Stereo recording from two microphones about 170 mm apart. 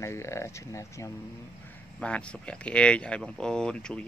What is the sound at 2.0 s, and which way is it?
Speech, 5° left (ahead or behind).